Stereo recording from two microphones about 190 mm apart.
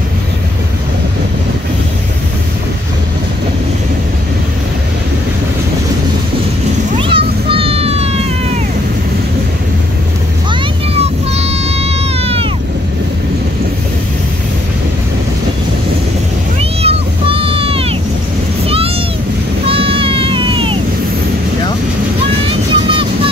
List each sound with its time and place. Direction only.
7.0 s cat: 30° right (ahead or behind)
11.0 s vehicle: 35° right (ahead or behind)
16.8 s vehicle: 30° right (ahead or behind)
19.6 s a sound: 30° right (ahead or behind)
22.7 s vehicle: 25° right (ahead or behind)